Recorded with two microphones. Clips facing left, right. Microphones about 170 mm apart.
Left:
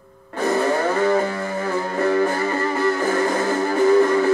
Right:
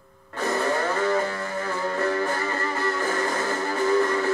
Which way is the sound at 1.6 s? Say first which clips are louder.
Left 4 dB; 15° left (ahead or behind).